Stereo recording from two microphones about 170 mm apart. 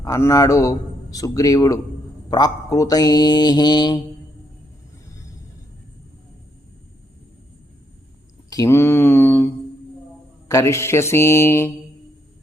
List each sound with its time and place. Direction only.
0.0 s a man's voice: 20° left (ahead or behind)
8.4 s speech: 20° left (ahead or behind)
10.5 s speech: 15° left (ahead or behind)